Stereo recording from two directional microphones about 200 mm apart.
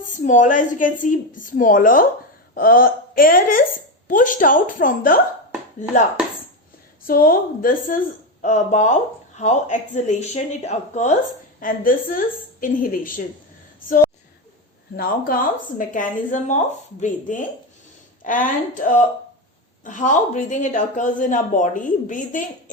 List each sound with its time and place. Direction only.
0.0 s speech: 40° left (ahead or behind)
7.1 s speech: 45° left (ahead or behind)
14.9 s speech: 45° left (ahead or behind)